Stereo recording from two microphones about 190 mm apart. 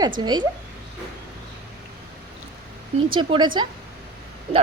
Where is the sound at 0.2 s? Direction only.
20° right (ahead or behind).